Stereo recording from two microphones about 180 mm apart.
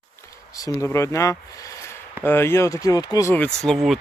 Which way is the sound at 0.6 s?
15° left (ahead or behind).